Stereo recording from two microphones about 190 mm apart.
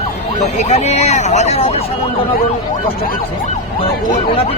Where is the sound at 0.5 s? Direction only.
35° left (ahead or behind).